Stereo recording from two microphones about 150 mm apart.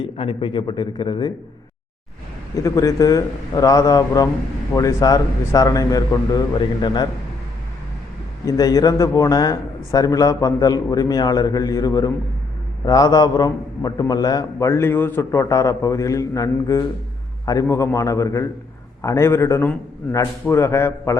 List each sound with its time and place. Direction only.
0.0 s speech: 35° left (ahead or behind)
2.6 s a man's voice: 20° left (ahead or behind)
8.4 s a man's voice: 25° left (ahead or behind)